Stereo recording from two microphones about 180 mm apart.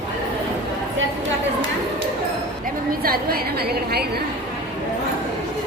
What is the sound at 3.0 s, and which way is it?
A woman's voice, 55° right (ahead or behind).